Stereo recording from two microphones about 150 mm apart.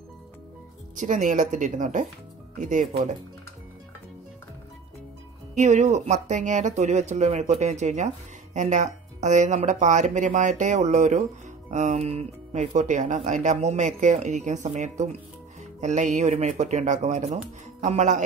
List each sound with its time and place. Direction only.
0.9 s speech: 55° right (ahead or behind)
5.5 s speech: 50° right (ahead or behind)